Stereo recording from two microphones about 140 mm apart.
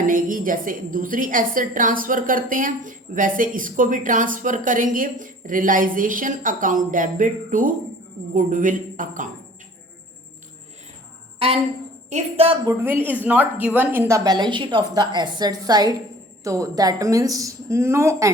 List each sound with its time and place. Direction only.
0.0 s a woman's voice: 75° right (ahead or behind)
11.3 s a woman's voice: 45° right (ahead or behind)
12.8 s speech: 15° right (ahead or behind)
14.3 s a woman's voice: 30° right (ahead or behind)